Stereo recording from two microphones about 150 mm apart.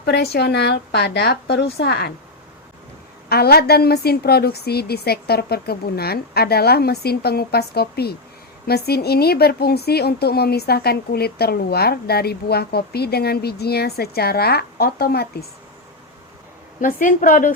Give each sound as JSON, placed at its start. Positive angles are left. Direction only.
{"t": 0.0, "sound": "a woman's voice", "side_deg": 90}
{"t": 3.2, "sound": "a woman's voice", "side_deg": 90}
{"t": 16.8, "sound": "a woman's voice", "side_deg": 60}